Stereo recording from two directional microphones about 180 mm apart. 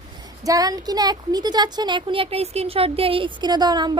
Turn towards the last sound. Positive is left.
turn(degrees=-25)  # may be behind; listen again after turning